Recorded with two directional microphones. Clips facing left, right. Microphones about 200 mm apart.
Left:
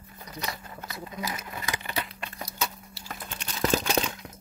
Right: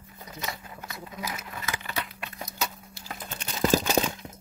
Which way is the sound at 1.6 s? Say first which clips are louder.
Left 1 dB; 15° left (ahead or behind).